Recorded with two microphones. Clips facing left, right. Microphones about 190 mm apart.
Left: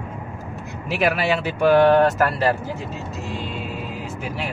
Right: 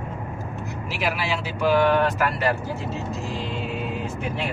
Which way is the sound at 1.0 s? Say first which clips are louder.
Left 6 dB; 60° left (ahead or behind).